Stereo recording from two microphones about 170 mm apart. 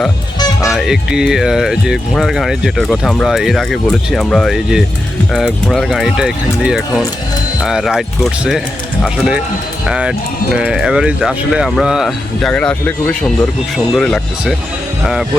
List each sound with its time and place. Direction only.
0.3 s music: 20° left (ahead or behind)
0.7 s speech: centre (ahead or behind)